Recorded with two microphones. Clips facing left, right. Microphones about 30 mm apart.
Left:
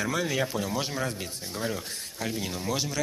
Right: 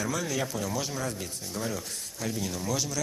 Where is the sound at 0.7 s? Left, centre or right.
Left.